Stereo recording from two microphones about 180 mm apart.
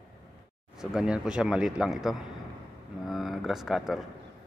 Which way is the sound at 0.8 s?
5° right (ahead or behind).